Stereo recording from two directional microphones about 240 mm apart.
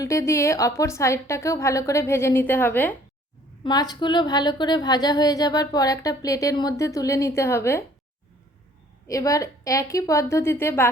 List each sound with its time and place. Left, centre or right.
0.0 s a woman's voice: centre
9.0 s a woman's voice: centre